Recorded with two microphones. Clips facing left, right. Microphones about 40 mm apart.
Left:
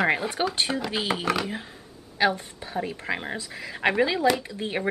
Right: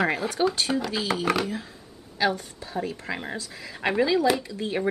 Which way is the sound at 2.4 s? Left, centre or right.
Left.